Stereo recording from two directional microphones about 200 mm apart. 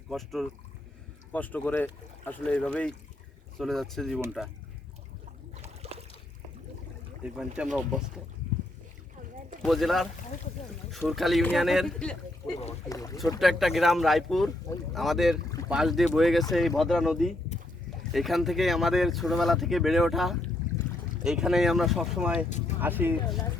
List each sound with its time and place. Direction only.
0.1 s speech: centre (ahead or behind)
5.8 s a sound: 30° right (ahead or behind)
7.3 s speech: 5° right (ahead or behind)
9.6 s speech: centre (ahead or behind)
11.1 s speech: centre (ahead or behind)
12.9 s speech: 15° left (ahead or behind)
13.4 s speech: centre (ahead or behind)
22.4 s speech: 35° left (ahead or behind)
22.8 s speech: 10° right (ahead or behind)